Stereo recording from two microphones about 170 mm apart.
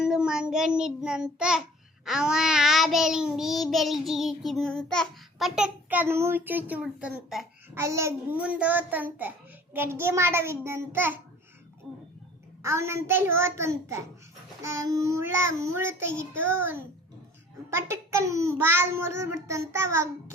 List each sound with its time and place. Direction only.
0.0 s child singing: 5° right (ahead or behind)
7.8 s a child's voice: 15° right (ahead or behind)
12.6 s a child's voice: 15° right (ahead or behind)